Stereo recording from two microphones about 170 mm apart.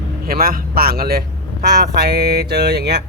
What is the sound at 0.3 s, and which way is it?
Speech, 60° right (ahead or behind).